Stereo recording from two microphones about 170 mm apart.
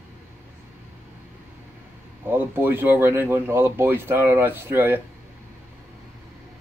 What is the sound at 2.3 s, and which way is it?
Speech, 10° right (ahead or behind).